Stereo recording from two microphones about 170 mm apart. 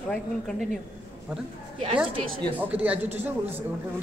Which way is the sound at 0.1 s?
5° left (ahead or behind).